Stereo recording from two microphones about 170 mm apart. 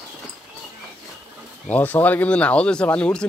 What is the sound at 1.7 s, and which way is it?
Speech, 10° left (ahead or behind).